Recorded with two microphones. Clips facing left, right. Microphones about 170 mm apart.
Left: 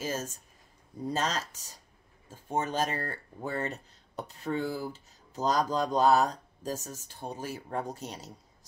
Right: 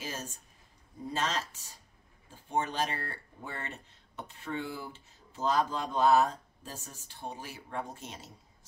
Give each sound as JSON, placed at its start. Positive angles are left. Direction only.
{"t": 0.0, "sound": "speech", "side_deg": 40}